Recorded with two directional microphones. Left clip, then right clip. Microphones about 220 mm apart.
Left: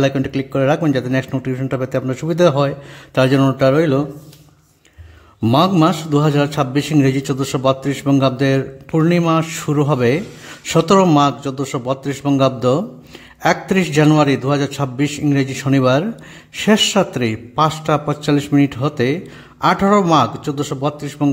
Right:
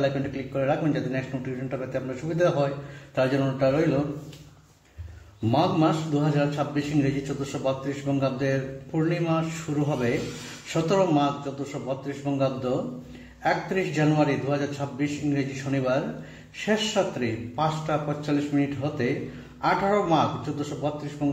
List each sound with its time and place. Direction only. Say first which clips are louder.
0.6 s a man's voice: left 9 dB; 45° left (ahead or behind)
5.5 s a man's voice: left 9 dB; 50° left (ahead or behind)